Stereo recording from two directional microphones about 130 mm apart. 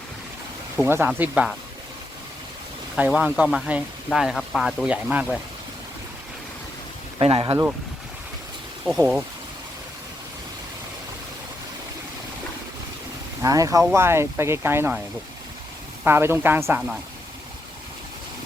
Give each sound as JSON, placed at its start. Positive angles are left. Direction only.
{"t": 0.8, "sound": "speech", "side_deg": -15}
{"t": 3.0, "sound": "speech", "side_deg": -5}
{"t": 7.2, "sound": "speech", "side_deg": -45}
{"t": 8.9, "sound": "speech", "side_deg": 5}
{"t": 13.4, "sound": "speech", "side_deg": -25}
{"t": 16.0, "sound": "speech", "side_deg": -20}